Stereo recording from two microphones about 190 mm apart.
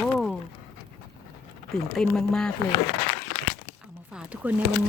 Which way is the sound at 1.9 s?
Centre (ahead or behind).